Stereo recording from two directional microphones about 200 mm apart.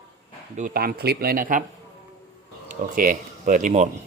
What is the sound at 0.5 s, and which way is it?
Speech, 45° right (ahead or behind).